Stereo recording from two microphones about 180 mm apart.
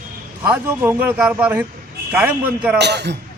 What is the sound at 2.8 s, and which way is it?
Speech, 70° right (ahead or behind).